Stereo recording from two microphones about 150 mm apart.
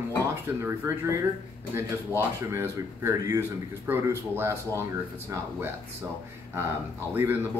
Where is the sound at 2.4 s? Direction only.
20° right (ahead or behind).